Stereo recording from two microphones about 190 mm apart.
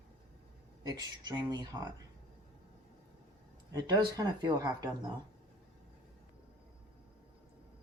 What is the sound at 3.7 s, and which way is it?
Speech, 20° right (ahead or behind).